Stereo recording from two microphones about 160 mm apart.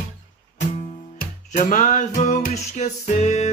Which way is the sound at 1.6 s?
50° left (ahead or behind).